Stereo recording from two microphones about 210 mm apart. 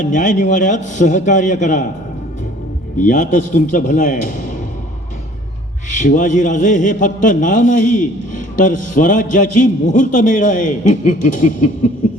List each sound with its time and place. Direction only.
0.0 s a man's voice: 35° left (ahead or behind)
3.0 s a man's voice: 35° left (ahead or behind)
5.9 s a man's voice: 35° left (ahead or behind)